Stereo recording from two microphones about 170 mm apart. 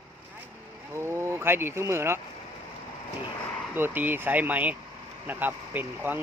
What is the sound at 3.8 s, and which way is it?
Speech, 10° right (ahead or behind).